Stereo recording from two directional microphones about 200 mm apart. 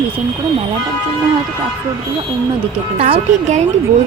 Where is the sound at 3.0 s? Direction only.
30° right (ahead or behind).